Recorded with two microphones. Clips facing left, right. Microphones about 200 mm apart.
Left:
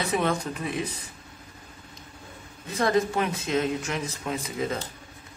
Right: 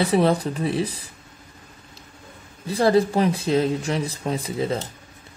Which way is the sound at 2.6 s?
35° right (ahead or behind).